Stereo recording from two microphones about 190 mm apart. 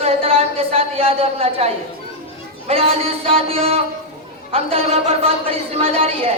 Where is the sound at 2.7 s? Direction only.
30° right (ahead or behind).